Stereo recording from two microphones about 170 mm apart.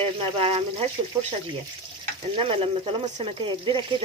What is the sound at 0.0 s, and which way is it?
Speech, 35° right (ahead or behind).